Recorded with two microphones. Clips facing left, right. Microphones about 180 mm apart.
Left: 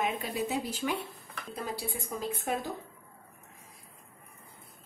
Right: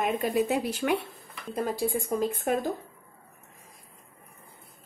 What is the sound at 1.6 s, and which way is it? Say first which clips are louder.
A woman's voice: right 9 dB; 50° right (ahead or behind).